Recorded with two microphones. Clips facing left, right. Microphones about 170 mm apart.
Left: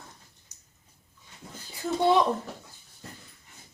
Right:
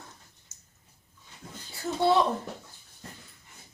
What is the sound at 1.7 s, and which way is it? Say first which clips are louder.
Speech: left 1 dB; 15° left (ahead or behind).